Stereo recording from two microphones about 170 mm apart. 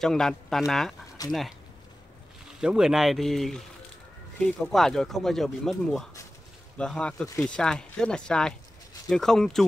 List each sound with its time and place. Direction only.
0.0 s speech: 5° left (ahead or behind)
1.2 s speech: 20° left (ahead or behind)
2.6 s speech: 5° right (ahead or behind)